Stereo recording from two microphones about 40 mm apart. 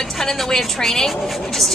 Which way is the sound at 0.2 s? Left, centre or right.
Centre.